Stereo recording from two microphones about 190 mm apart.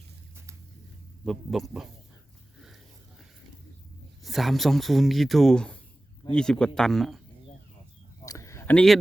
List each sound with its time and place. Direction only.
1.2 s speech: centre (ahead or behind)
4.2 s speech: centre (ahead or behind)
8.2 s a sound: 15° left (ahead or behind)